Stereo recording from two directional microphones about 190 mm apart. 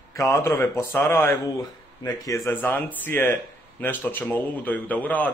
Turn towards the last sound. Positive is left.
turn(degrees=10)  # may be behind; listen again after turning